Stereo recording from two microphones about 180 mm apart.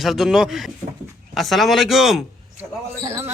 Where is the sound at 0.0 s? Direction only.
Centre (ahead or behind).